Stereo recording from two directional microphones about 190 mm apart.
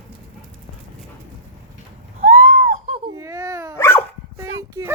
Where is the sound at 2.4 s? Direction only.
45° right (ahead or behind).